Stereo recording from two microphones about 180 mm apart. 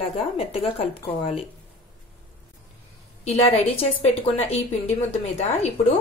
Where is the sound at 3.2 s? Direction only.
35° left (ahead or behind).